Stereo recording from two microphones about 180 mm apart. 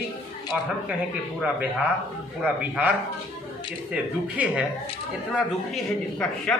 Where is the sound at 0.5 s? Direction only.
5° right (ahead or behind).